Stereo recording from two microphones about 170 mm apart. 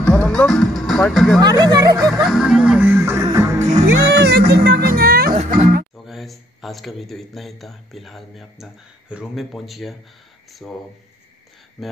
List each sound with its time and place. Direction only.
0.0 s music: 5° left (ahead or behind)
1.4 s speech: 20° right (ahead or behind)
2.2 s music: 5° right (ahead or behind)
4.1 s music: 75° right (ahead or behind)
5.3 s music: 40° right (ahead or behind)
6.0 s a man's voice: centre (ahead or behind)
10.5 s a sound: centre (ahead or behind)
11.8 s speech: centre (ahead or behind)